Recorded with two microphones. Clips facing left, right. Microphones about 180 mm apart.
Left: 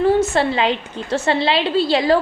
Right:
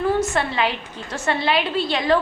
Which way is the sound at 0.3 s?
25° left (ahead or behind).